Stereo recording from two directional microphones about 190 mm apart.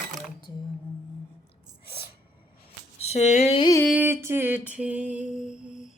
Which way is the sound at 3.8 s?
10° right (ahead or behind).